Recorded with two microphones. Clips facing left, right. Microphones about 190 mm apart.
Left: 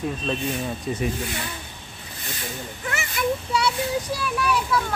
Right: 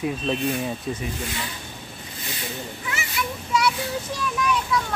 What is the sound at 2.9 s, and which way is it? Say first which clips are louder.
Speech: left 3 dB; 50° left (ahead or behind).